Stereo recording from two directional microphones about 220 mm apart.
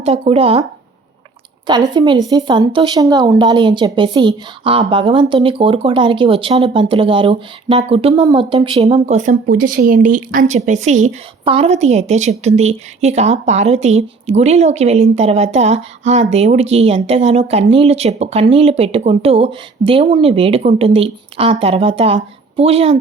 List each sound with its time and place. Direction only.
0.0 s speech: 25° right (ahead or behind)
1.6 s speech: 20° right (ahead or behind)